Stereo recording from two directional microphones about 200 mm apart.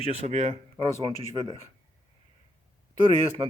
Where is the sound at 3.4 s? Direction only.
25° right (ahead or behind).